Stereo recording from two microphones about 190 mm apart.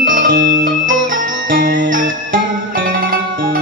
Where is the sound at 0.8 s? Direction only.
45° right (ahead or behind).